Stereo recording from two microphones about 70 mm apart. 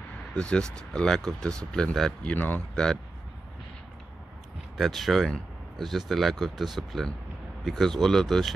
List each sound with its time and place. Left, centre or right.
0.4 s speech: centre
2.2 s speech: left
2.7 s speech: centre
4.7 s speech: centre